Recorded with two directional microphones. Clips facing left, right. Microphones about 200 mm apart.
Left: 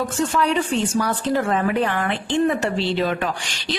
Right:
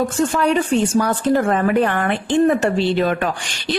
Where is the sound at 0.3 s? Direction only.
50° right (ahead or behind).